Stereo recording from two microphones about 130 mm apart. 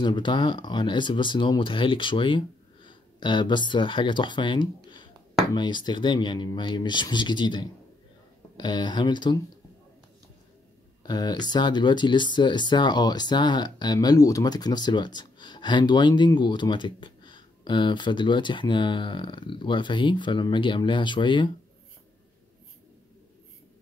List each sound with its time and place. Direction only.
0.0 s speech: 35° left (ahead or behind)
11.1 s speech: 35° left (ahead or behind)